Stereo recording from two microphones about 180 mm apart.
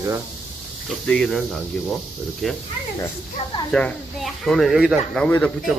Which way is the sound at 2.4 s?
Centre (ahead or behind).